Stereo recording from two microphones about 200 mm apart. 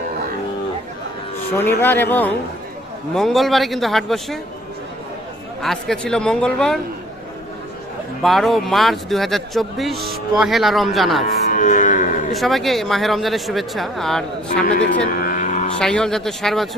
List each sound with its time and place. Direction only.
1.8 s speech: 10° left (ahead or behind)
5.6 s speech: centre (ahead or behind)
8.2 s speech: centre (ahead or behind)
11.3 s livestock: 45° left (ahead or behind)
12.3 s speech: centre (ahead or behind)
14.6 s a man's voice: 45° left (ahead or behind)
15.0 s vehicle: 40° left (ahead or behind)
15.8 s speech: 5° left (ahead or behind)